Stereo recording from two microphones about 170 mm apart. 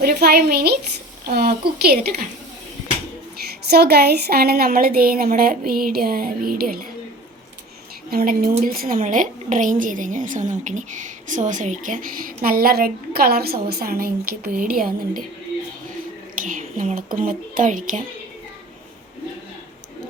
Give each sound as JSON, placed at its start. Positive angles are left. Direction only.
{"t": 0.0, "sound": "a woman's voice", "side_deg": -70}
{"t": 3.7, "sound": "a woman's voice", "side_deg": -70}
{"t": 8.1, "sound": "a woman's voice", "side_deg": -60}
{"t": 16.5, "sound": "a woman's voice", "side_deg": -50}